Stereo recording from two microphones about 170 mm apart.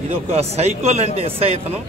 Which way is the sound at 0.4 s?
40° right (ahead or behind).